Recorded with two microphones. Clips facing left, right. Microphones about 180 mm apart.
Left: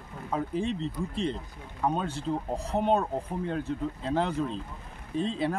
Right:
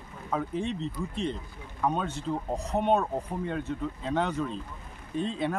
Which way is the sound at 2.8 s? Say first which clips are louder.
Even; centre (ahead or behind).